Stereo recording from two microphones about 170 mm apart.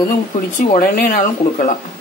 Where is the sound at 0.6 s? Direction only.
55° left (ahead or behind).